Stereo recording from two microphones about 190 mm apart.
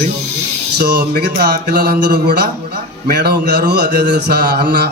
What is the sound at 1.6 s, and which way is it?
Speech, 55° right (ahead or behind).